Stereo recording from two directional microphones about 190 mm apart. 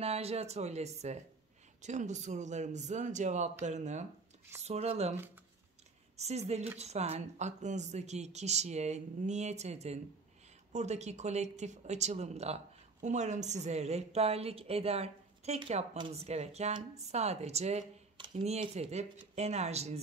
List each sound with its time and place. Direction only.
0.0 s a woman's voice: 30° right (ahead or behind)
6.1 s a woman's voice: 35° right (ahead or behind)